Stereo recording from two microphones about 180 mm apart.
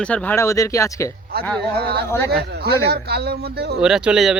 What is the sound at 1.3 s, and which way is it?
Speech, 60° right (ahead or behind).